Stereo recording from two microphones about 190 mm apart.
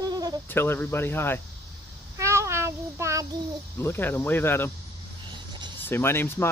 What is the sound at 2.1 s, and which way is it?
Child singing, 15° right (ahead or behind).